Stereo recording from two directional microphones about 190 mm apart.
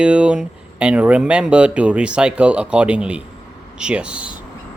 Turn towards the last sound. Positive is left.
turn(degrees=-5)  # may be behind; listen again after turning